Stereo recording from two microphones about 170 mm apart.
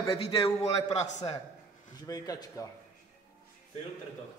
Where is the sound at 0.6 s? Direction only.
40° left (ahead or behind).